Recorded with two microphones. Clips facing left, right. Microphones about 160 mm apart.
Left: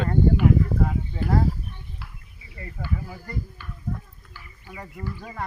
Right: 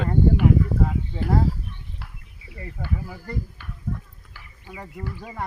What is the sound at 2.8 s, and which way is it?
Speech, 5° right (ahead or behind).